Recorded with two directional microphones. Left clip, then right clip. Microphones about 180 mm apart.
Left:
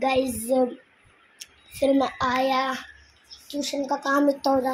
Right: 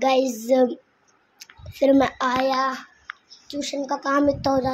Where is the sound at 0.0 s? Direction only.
10° right (ahead or behind).